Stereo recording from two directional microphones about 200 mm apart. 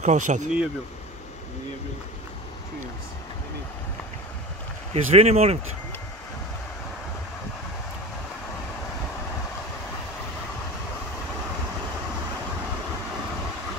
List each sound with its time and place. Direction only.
0.0 s speech: 35° right (ahead or behind)
4.9 s speech: 30° right (ahead or behind)